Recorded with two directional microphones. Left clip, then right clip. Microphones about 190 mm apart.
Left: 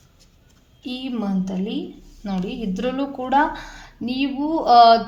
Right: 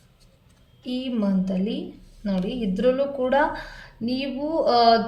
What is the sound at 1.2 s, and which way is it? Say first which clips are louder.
Speech: right 2 dB; 40° left (ahead or behind).